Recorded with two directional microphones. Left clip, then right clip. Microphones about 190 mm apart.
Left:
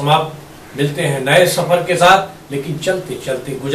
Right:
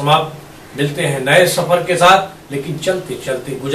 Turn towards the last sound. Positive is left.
turn(degrees=0)  # may be behind; listen again after turning